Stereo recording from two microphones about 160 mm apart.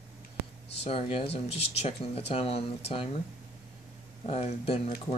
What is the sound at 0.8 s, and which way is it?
Speech, 35° left (ahead or behind).